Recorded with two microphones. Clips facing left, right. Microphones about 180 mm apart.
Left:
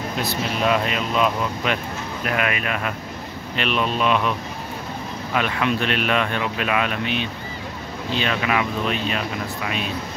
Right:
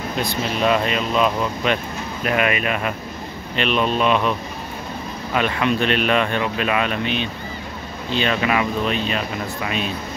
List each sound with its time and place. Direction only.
0.2 s speech: 5° left (ahead or behind)
5.3 s speech: centre (ahead or behind)